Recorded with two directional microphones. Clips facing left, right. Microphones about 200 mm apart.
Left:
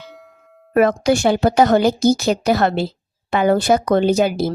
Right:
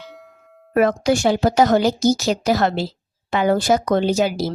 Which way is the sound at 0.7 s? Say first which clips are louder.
Left 2 dB; 55° left (ahead or behind).